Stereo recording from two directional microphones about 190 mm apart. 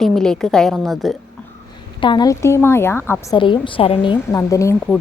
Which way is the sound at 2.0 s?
20° left (ahead or behind).